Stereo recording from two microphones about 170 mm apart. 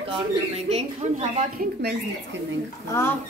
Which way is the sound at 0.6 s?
40° right (ahead or behind).